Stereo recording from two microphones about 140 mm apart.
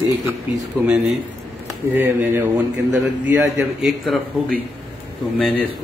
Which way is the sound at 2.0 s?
15° right (ahead or behind).